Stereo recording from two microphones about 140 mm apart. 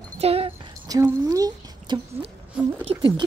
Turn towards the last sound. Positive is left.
turn(degrees=-45)  # may be behind; listen again after turning